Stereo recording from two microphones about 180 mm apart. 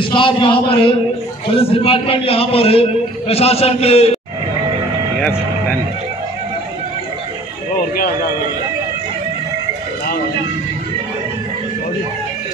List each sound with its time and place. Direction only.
0.0 s a man's voice: 30° left (ahead or behind)